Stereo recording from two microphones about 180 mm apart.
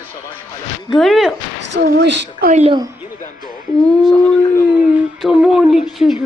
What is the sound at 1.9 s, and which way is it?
Speech, 75° right (ahead or behind).